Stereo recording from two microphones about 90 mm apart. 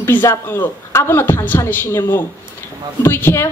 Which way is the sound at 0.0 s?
25° left (ahead or behind).